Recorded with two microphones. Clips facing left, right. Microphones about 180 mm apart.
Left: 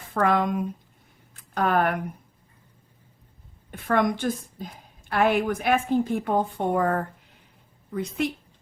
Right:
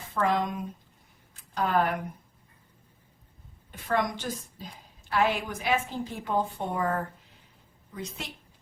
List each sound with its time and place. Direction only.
0.1 s a woman's voice: 55° left (ahead or behind)
1.3 s a sound: 55° left (ahead or behind)
3.7 s a woman's voice: 55° left (ahead or behind)